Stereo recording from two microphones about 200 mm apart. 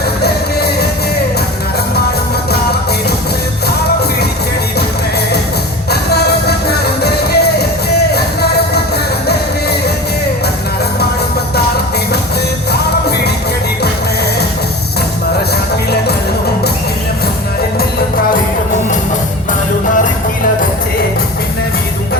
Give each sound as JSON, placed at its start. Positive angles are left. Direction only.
{"t": 0.2, "sound": "music", "side_deg": 55}
{"t": 5.9, "sound": "music", "side_deg": 55}
{"t": 12.7, "sound": "music", "side_deg": 55}